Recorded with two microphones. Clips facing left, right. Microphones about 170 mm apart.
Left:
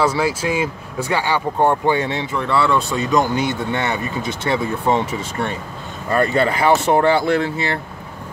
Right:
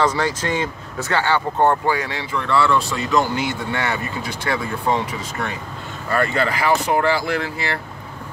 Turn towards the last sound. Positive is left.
turn(degrees=25)  # may be behind; listen again after turning